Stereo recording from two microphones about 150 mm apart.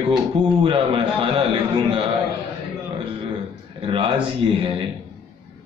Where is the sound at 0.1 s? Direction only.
35° right (ahead or behind).